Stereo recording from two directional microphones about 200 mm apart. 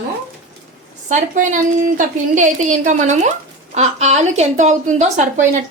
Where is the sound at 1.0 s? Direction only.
40° right (ahead or behind).